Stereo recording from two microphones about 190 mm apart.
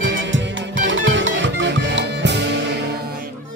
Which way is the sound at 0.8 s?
80° right.